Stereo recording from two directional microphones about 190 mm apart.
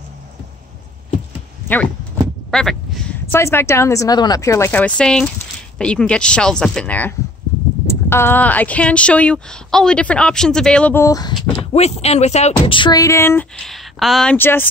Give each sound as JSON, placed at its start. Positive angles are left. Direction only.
{"t": 2.5, "sound": "speech", "side_deg": 0}
{"t": 3.3, "sound": "speech", "side_deg": 15}
{"t": 11.7, "sound": "speech", "side_deg": 35}
{"t": 13.6, "sound": "speech", "side_deg": 0}